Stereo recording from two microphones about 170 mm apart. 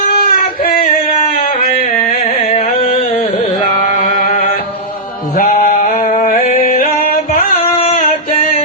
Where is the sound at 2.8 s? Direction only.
35° left (ahead or behind).